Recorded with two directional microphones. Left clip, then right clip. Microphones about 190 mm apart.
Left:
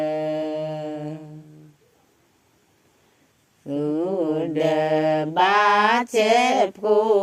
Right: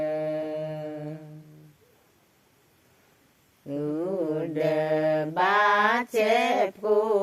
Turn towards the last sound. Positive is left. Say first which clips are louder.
# left 5 dB
turn(degrees=45)  # may be behind; listen again after turning